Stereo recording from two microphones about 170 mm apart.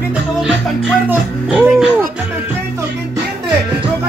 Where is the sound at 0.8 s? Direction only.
10° right (ahead or behind).